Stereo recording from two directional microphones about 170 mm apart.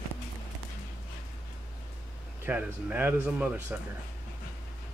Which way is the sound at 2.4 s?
10° right (ahead or behind).